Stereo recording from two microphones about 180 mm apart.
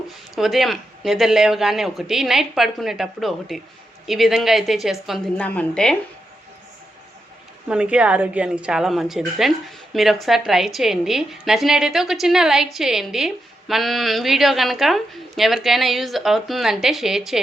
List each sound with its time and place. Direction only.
0.3 s a woman's voice: centre (ahead or behind)
7.7 s a woman's voice: 5° right (ahead or behind)